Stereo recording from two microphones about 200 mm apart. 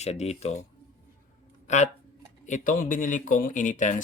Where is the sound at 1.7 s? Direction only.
35° left (ahead or behind).